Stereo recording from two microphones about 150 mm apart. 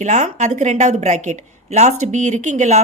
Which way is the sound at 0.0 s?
50° right (ahead or behind).